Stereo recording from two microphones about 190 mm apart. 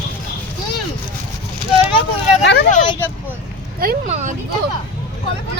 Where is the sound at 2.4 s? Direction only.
60° left (ahead or behind).